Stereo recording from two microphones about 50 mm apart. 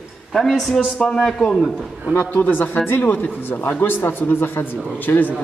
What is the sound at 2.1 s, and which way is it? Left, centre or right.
A man's voice, left.